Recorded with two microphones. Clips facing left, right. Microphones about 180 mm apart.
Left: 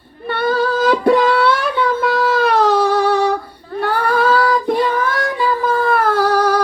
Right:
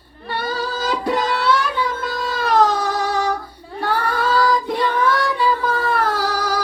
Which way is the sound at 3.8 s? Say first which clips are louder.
Left 5 dB; 60° left (ahead or behind).